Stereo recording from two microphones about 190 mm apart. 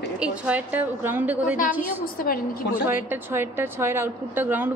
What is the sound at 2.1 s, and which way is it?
Speech, 50° left (ahead or behind).